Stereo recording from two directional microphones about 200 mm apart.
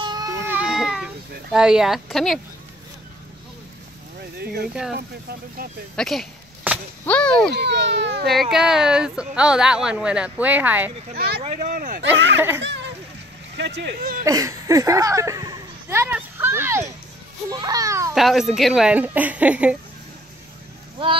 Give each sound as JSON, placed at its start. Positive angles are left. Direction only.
{"t": 0.0, "sound": "baby cry", "side_deg": -20}
{"t": 0.5, "sound": "a sound", "side_deg": -5}
{"t": 4.4, "sound": "speech", "side_deg": -50}
{"t": 5.9, "sound": "a sound", "side_deg": 0}
{"t": 7.1, "sound": "speech", "side_deg": 5}
{"t": 7.5, "sound": "a child's voice", "side_deg": -60}
{"t": 8.3, "sound": "speech", "side_deg": 0}
{"t": 11.1, "sound": "speech", "side_deg": -50}
{"t": 11.4, "sound": "speech", "side_deg": -35}
{"t": 12.4, "sound": "a child's voice", "side_deg": -10}
{"t": 13.6, "sound": "a child's voice", "side_deg": -60}
{"t": 14.2, "sound": "children playing", "side_deg": -15}
{"t": 18.1, "sound": "speech", "side_deg": 0}